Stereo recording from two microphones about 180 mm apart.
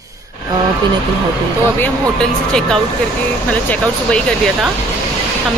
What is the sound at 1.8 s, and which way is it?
Speech, 5° left (ahead or behind).